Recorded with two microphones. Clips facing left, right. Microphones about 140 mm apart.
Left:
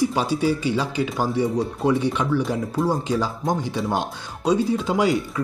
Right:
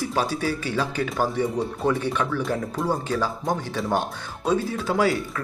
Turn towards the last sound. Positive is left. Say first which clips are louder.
# left 2 dB
turn(degrees=15)  # may be behind; listen again after turning